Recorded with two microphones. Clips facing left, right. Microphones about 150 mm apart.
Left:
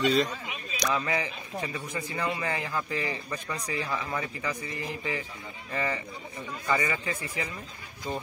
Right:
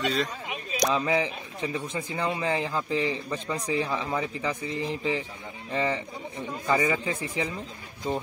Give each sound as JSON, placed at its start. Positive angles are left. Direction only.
{"t": 0.0, "sound": "speech", "side_deg": 0}
{"t": 0.9, "sound": "a man's voice", "side_deg": -15}
{"t": 6.7, "sound": "speech", "side_deg": -5}
{"t": 8.1, "sound": "a man's voice", "side_deg": -20}